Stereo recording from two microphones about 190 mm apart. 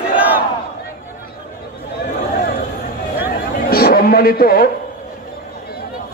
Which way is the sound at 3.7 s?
50° left (ahead or behind).